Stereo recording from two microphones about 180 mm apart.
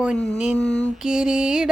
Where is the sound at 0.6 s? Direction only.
5° left (ahead or behind).